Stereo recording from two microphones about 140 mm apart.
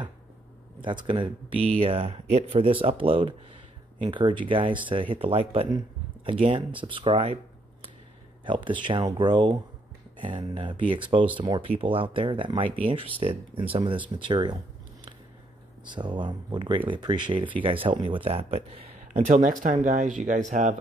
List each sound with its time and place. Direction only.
0.7 s speech: 35° right (ahead or behind)
8.5 s speech: 35° right (ahead or behind)
15.8 s speech: 35° right (ahead or behind)
18.9 s speech: 65° right (ahead or behind)